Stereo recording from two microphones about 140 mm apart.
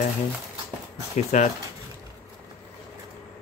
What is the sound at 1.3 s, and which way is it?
Speech, 60° left (ahead or behind).